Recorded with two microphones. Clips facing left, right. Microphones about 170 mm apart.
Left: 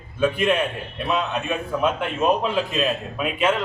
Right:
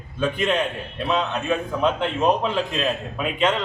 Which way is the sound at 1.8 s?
5° left (ahead or behind).